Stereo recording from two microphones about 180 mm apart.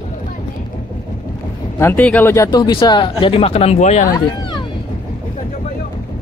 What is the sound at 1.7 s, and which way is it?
Speech, 10° left (ahead or behind).